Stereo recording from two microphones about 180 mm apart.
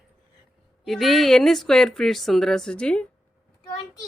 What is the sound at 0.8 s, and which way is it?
A woman's voice, centre (ahead or behind).